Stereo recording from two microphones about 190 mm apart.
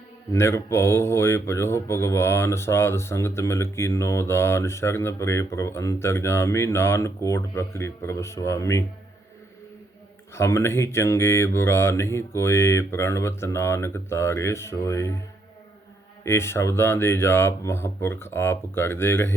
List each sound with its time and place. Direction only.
0.3 s speech: 15° left (ahead or behind)
10.3 s speech: 15° left (ahead or behind)
16.2 s speech: 15° left (ahead or behind)